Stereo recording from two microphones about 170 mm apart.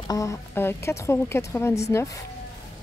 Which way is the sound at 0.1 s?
20° left (ahead or behind).